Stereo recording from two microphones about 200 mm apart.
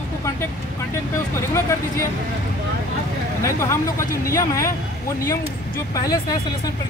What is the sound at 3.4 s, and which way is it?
Speech, 15° left (ahead or behind).